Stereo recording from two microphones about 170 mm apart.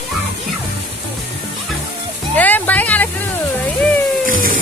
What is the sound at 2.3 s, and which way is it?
Music, 10° left (ahead or behind).